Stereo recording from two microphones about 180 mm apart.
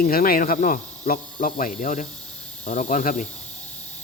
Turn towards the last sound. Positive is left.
turn(degrees=45)  # may be behind; listen again after turning